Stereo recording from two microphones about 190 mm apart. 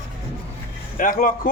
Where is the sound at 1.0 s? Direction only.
45° left (ahead or behind).